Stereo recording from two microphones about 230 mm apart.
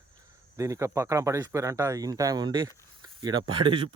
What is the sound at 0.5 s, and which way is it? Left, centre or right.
Speech, centre.